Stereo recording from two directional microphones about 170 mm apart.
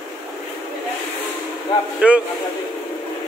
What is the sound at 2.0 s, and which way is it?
Speech, 5° right (ahead or behind).